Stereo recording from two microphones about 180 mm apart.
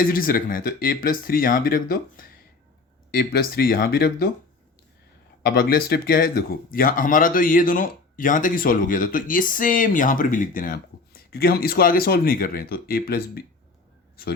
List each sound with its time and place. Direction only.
0.1 s speech: 55° left (ahead or behind)
5.4 s speech: 55° left (ahead or behind)